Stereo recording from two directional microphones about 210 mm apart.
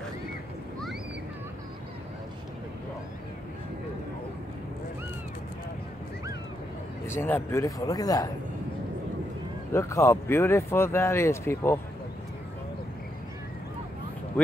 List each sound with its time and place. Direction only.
7.1 s speech: 10° left (ahead or behind)
9.7 s speech: 15° left (ahead or behind)